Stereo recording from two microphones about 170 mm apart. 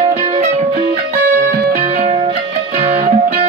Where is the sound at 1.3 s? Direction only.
60° right (ahead or behind).